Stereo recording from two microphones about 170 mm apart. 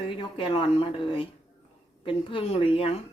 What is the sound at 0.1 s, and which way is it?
Speech, 30° left (ahead or behind).